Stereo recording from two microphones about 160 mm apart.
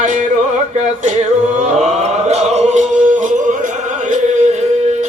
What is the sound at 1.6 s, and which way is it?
Music, 45° right (ahead or behind).